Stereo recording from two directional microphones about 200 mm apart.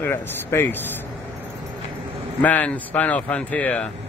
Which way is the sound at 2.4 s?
10° left (ahead or behind).